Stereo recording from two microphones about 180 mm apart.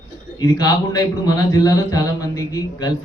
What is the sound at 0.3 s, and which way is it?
A man's voice, 20° left (ahead or behind).